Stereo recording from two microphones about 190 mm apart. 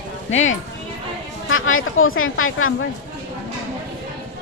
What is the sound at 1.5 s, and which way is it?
Speech, 90° left.